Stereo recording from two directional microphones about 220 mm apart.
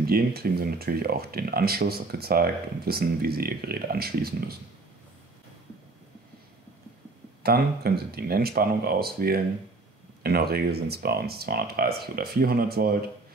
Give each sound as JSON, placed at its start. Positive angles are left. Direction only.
{"t": 0.0, "sound": "speech", "side_deg": -45}
{"t": 7.4, "sound": "speech", "side_deg": -45}